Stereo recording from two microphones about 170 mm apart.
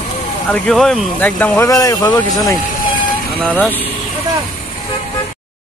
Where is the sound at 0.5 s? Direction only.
5° left (ahead or behind); by 2.6 s 20° left (ahead or behind).